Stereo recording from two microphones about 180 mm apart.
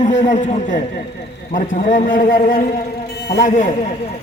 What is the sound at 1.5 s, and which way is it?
A man's voice, 45° left (ahead or behind).